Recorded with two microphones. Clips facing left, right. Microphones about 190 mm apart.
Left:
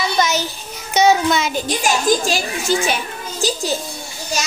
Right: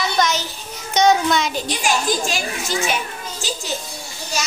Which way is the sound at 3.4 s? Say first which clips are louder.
Left 8 dB; 40° left (ahead or behind).